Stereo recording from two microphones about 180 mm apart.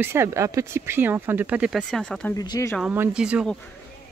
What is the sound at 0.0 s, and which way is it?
Speech, 15° right (ahead or behind).